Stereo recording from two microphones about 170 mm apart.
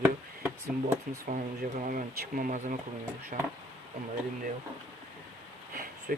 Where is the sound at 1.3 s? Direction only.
45° right (ahead or behind).